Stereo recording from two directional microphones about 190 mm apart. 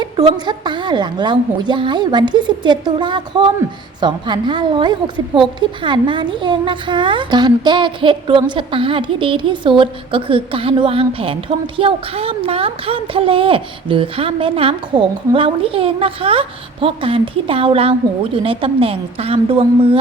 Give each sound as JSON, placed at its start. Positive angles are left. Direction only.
{"t": 0.4, "sound": "speech", "side_deg": -25}